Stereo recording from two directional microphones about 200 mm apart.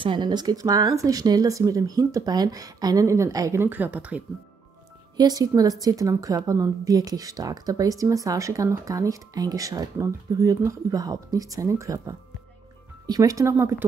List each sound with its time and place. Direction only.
0.0 s a woman's voice: 25° right (ahead or behind); by 4.2 s 5° right (ahead or behind)
5.1 s a woman's voice: 20° right (ahead or behind)